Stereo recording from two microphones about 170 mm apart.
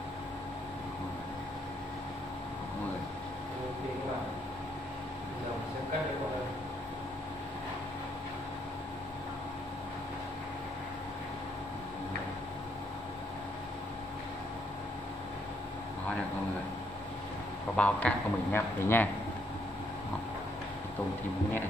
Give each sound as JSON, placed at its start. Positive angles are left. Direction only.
{"t": 17.7, "sound": "speech", "side_deg": 5}